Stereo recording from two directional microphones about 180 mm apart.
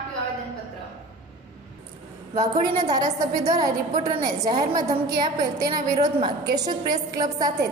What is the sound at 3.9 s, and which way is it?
Speech, 35° right (ahead or behind).